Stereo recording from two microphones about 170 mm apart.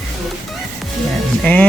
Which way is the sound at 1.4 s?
10° left (ahead or behind).